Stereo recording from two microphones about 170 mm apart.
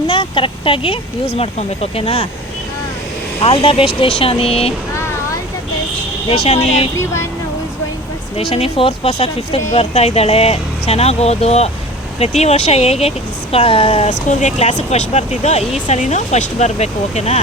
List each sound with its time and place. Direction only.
0.1 s speech: 30° left (ahead or behind)
3.4 s speech: 30° left (ahead or behind)
4.9 s a sound: 15° left (ahead or behind)
6.4 s speech: 40° left (ahead or behind)
8.4 s speech: 35° left (ahead or behind)